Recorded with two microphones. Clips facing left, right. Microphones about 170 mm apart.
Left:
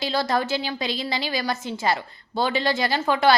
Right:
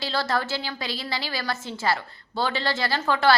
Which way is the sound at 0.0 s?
15° left (ahead or behind).